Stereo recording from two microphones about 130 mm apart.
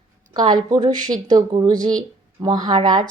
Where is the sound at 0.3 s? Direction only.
30° right (ahead or behind).